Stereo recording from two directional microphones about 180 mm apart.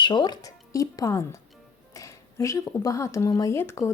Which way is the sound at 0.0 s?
25° left (ahead or behind).